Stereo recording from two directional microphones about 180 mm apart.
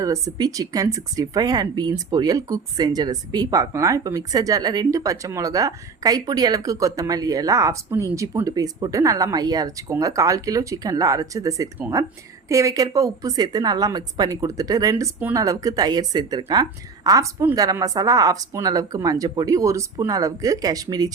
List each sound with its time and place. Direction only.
0.0 s speech: 20° right (ahead or behind)